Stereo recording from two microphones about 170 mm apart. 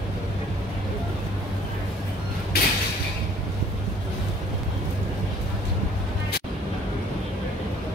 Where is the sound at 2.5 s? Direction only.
65° left (ahead or behind).